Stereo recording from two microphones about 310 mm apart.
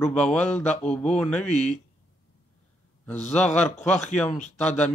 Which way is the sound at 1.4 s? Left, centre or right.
Left.